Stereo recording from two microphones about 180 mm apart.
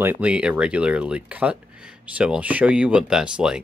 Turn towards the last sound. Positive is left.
turn(degrees=-5)  # may be behind; listen again after turning